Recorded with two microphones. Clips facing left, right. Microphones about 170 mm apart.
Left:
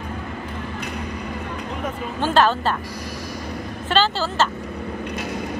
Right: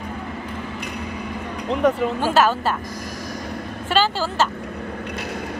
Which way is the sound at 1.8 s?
80° right.